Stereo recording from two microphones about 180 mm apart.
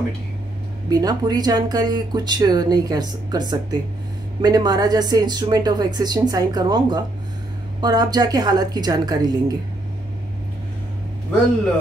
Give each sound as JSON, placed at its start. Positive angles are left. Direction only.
{"t": 0.8, "sound": "speech", "side_deg": -20}